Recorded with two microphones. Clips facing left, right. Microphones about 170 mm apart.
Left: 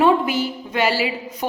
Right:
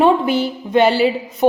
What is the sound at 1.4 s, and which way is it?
Speech, 20° right (ahead or behind).